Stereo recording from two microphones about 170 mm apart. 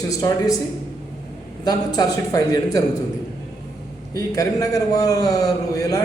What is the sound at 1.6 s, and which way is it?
A man's voice, 20° left (ahead or behind).